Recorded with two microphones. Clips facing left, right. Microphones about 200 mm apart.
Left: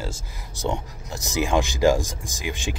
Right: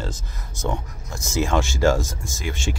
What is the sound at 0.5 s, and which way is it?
Speech, 35° left (ahead or behind).